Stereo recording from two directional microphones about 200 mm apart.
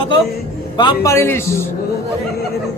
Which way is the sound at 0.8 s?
20° left (ahead or behind).